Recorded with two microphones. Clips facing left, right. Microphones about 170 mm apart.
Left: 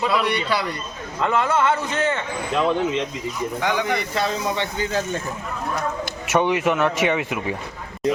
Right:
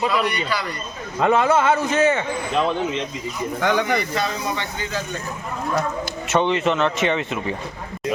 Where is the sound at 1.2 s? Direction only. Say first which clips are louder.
Right 4 dB; 55° right (ahead or behind).